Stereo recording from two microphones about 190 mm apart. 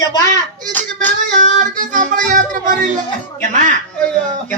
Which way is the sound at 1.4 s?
45° right (ahead or behind).